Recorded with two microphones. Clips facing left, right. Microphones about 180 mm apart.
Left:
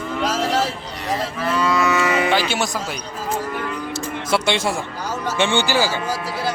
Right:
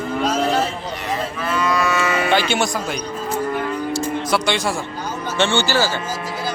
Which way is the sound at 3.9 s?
25° left (ahead or behind).